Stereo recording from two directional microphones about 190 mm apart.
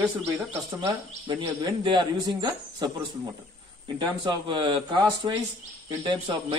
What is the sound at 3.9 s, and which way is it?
Speech, 25° right (ahead or behind).